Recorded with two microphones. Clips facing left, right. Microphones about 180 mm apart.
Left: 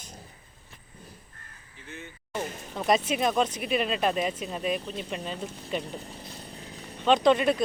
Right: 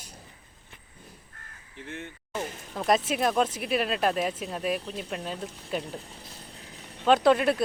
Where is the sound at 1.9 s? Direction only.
60° right (ahead or behind).